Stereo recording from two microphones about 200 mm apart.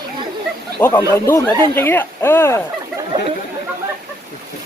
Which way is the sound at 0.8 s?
10° left (ahead or behind).